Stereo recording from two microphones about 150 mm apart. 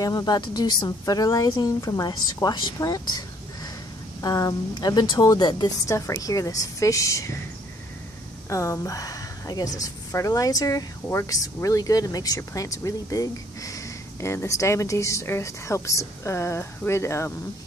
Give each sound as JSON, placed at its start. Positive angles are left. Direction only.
{"t": 0.0, "sound": "speech", "side_deg": 25}
{"t": 8.5, "sound": "speech", "side_deg": 20}